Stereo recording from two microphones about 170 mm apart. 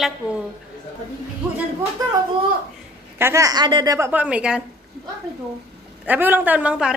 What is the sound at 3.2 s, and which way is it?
A woman's voice, 15° right (ahead or behind).